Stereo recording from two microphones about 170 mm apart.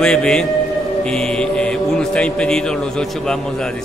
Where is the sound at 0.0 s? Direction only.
5° left (ahead or behind).